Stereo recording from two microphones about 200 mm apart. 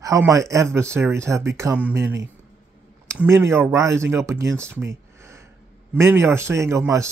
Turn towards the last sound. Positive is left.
turn(degrees=-15)  # may be behind; listen again after turning